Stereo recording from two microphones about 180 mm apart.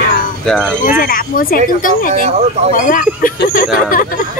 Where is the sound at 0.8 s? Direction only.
50° left (ahead or behind).